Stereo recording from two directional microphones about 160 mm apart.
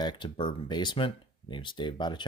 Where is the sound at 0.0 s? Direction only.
30° left (ahead or behind).